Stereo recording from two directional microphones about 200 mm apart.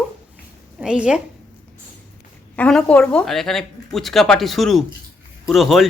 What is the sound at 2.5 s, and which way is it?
Speech, 5° left (ahead or behind).